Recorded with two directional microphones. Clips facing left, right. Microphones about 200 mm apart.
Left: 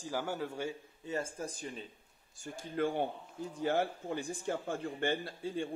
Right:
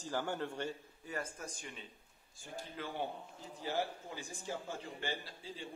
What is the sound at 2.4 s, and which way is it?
A man's voice, 50° left (ahead or behind).